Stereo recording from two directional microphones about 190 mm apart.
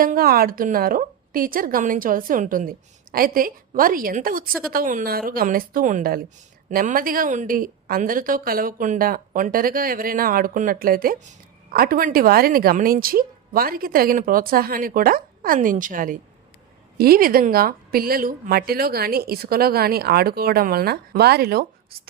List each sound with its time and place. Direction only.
0.0 s a woman's voice: 50° right (ahead or behind)